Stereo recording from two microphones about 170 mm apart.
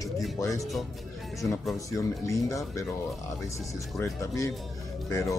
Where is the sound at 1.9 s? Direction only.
20° left (ahead or behind).